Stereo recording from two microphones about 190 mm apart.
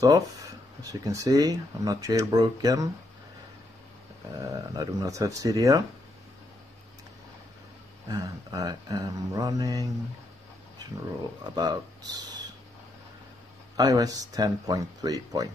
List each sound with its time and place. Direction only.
0.8 s speech: 20° right (ahead or behind)
4.4 s speech: 20° right (ahead or behind)
8.1 s speech: 20° right (ahead or behind)
11.5 s speech: 20° right (ahead or behind)
13.7 s speech: 20° right (ahead or behind)